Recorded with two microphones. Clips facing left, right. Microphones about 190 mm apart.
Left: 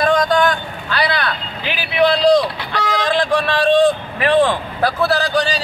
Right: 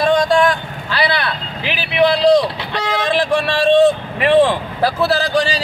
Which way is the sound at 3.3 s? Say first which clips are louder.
Right 2 dB; 25° right (ahead or behind).